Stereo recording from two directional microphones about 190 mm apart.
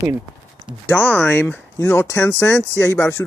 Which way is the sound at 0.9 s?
10° left (ahead or behind).